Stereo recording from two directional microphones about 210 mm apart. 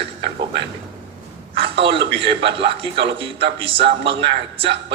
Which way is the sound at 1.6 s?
25° right (ahead or behind).